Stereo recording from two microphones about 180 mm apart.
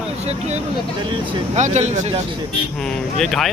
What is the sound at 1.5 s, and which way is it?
Speech, 40° right (ahead or behind).